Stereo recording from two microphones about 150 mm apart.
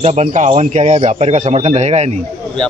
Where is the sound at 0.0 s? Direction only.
50° right (ahead or behind).